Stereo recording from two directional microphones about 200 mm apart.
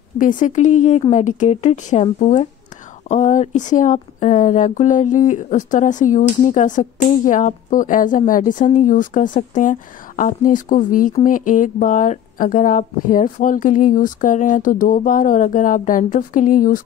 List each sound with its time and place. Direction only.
0.2 s speech: 40° left (ahead or behind)